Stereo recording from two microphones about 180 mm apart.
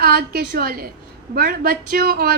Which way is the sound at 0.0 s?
60° right (ahead or behind).